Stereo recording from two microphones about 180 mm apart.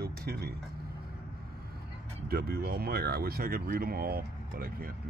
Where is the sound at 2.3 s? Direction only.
55° right (ahead or behind).